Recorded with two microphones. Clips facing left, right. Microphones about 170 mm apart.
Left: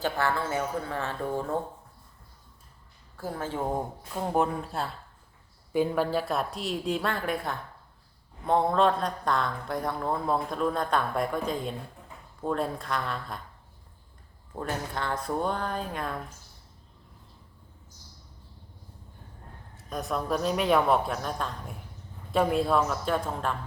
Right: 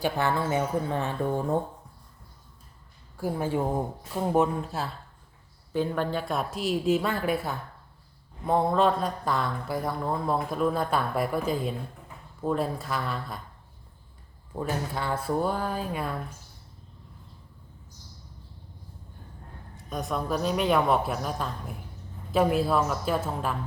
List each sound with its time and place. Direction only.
0.0 s speech: 20° right (ahead or behind)
3.2 s speech: 10° right (ahead or behind)
14.5 s speech: 5° right (ahead or behind)
19.7 s speech: centre (ahead or behind)